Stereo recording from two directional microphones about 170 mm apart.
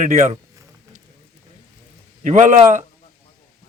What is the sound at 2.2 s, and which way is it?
Speech, 45° right (ahead or behind).